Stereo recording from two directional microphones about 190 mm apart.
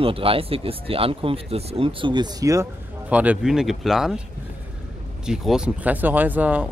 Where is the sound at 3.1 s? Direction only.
5° right (ahead or behind).